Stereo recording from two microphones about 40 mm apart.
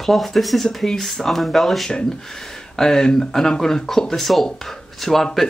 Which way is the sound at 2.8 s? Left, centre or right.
Centre.